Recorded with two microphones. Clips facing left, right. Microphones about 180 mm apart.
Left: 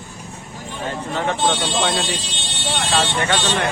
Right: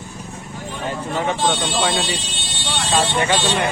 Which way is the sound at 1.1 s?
Centre (ahead or behind).